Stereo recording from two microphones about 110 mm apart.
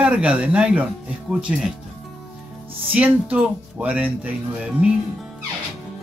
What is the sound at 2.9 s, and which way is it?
Speech, 15° right (ahead or behind).